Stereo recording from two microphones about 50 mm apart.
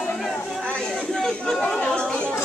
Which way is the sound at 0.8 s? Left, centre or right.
Centre.